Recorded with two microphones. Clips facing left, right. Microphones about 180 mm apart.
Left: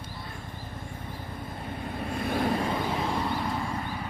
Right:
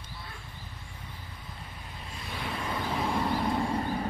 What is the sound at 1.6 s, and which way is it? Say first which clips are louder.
Vehicle: left 15 dB; 60° left (ahead or behind).